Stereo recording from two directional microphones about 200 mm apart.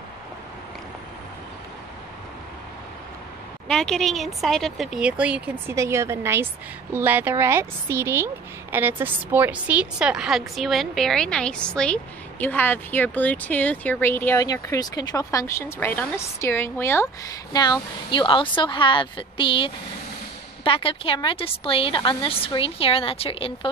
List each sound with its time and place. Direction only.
3.6 s a woman's voice: 5° left (ahead or behind); by 23.7 s 30° left (ahead or behind)